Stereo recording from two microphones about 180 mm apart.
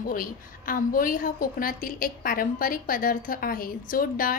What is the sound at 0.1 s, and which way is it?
A woman's voice, 50° left (ahead or behind).